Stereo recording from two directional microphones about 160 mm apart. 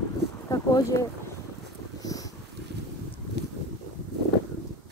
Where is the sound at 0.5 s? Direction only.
20° left (ahead or behind).